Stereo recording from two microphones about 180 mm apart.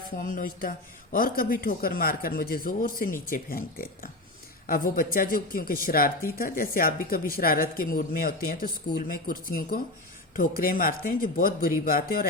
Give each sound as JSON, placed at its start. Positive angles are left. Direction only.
{"t": 0.2, "sound": "speech", "side_deg": 50}